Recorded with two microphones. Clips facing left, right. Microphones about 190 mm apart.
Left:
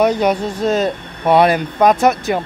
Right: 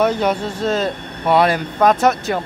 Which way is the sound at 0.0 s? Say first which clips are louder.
Left 2 dB; 15° left (ahead or behind).